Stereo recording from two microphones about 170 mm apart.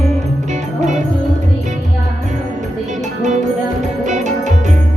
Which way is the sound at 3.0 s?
45° right (ahead or behind).